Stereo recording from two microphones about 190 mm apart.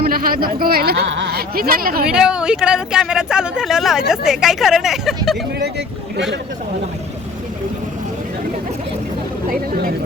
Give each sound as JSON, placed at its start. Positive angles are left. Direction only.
{"t": 0.0, "sound": "a woman's voice", "side_deg": -50}
{"t": 2.0, "sound": "speech", "side_deg": -5}
{"t": 9.5, "sound": "a woman's voice", "side_deg": -50}